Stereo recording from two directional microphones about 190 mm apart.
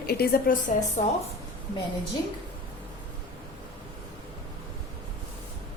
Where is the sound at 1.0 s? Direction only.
40° left (ahead or behind).